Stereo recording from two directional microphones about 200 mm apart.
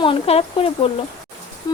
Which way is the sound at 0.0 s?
30° left (ahead or behind).